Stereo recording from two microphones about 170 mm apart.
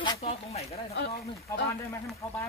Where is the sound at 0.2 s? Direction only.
35° left (ahead or behind).